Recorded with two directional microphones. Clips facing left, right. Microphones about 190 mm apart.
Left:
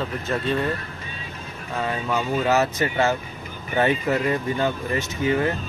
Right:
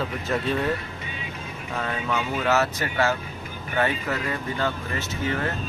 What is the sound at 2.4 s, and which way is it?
Speech, 15° left (ahead or behind).